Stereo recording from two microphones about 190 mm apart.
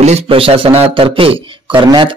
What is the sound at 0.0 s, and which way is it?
Speech, 35° right (ahead or behind).